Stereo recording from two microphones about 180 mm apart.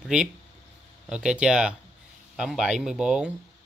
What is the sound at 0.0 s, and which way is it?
Speech, 5° right (ahead or behind).